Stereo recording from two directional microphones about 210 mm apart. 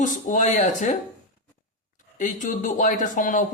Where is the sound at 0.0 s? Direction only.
35° left (ahead or behind).